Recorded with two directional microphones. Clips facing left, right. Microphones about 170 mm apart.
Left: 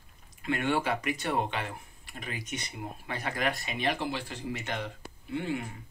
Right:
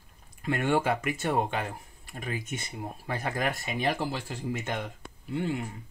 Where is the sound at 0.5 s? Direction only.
45° right (ahead or behind).